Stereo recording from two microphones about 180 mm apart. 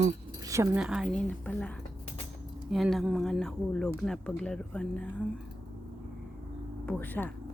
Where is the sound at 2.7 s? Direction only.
Centre (ahead or behind).